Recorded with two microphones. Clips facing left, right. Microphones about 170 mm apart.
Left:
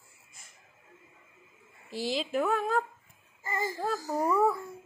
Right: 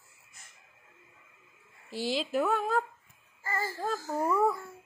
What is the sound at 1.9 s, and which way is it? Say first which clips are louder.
Speech: even; centre (ahead or behind).